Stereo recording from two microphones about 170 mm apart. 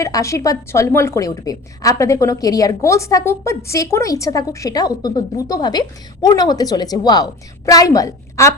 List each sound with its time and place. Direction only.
0.0 s a woman's voice: 20° left (ahead or behind)